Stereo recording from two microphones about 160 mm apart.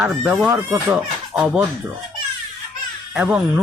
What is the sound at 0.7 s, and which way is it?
Speech, 5° right (ahead or behind).